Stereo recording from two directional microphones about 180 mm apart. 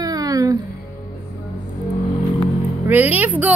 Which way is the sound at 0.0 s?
20° right (ahead or behind).